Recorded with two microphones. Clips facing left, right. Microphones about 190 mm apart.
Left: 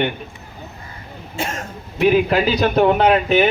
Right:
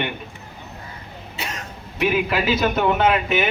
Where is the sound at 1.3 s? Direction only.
50° left (ahead or behind).